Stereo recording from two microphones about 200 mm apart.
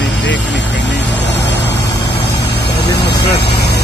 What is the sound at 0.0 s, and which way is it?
Vehicle, 60° left (ahead or behind).